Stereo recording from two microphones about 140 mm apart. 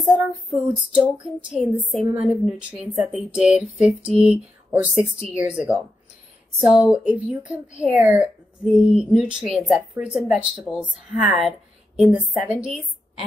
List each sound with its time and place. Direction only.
0.0 s child singing: 5° right (ahead or behind)
1.2 s speech: 5° right (ahead or behind)
5.0 s a woman's voice: 45° right (ahead or behind)
5.3 s speech: 10° right (ahead or behind)
6.9 s speech: 5° right (ahead or behind)